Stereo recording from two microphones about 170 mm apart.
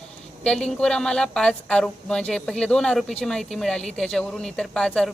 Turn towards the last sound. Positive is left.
turn(degrees=5)  # may be behind; listen again after turning